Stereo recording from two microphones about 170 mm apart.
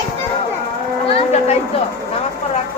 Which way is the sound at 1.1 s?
40° left (ahead or behind).